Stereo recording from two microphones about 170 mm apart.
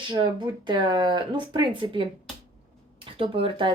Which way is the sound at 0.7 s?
25° right (ahead or behind).